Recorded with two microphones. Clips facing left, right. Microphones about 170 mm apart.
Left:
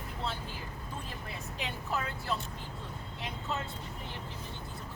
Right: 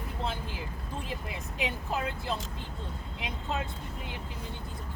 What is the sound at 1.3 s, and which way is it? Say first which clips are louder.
Vehicle: right 4 dB; 15° right (ahead or behind).